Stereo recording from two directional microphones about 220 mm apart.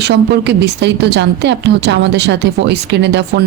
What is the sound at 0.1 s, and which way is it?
A woman's voice, 50° right (ahead or behind).